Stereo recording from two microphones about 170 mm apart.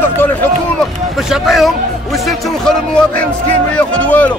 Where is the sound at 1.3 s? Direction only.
Centre (ahead or behind).